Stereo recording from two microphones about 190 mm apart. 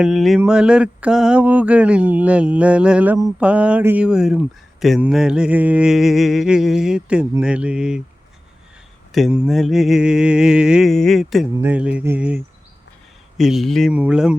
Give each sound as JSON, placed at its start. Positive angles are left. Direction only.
{"t": 0.0, "sound": "mantra", "side_deg": 0}
{"t": 3.4, "sound": "speech", "side_deg": -5}
{"t": 9.1, "sound": "speech", "side_deg": -5}
{"t": 11.6, "sound": "mantra", "side_deg": -5}
{"t": 13.3, "sound": "speech", "side_deg": 0}